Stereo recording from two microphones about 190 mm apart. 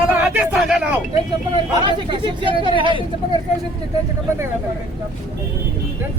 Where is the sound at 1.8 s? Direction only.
25° right (ahead or behind).